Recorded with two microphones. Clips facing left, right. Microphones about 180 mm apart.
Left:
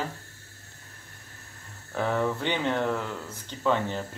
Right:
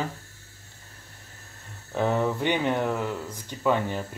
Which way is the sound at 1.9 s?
20° right (ahead or behind).